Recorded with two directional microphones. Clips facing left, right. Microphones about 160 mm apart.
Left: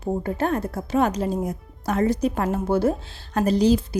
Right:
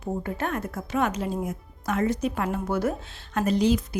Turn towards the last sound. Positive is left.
turn(degrees=35)  # may be behind; listen again after turning